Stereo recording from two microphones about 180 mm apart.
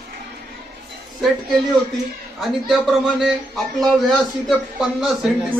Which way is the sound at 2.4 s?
Centre (ahead or behind).